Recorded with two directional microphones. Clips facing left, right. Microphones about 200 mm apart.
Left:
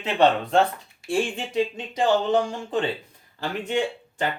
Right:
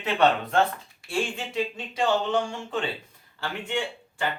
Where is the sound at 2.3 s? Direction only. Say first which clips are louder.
Left 4 dB; 35° left (ahead or behind).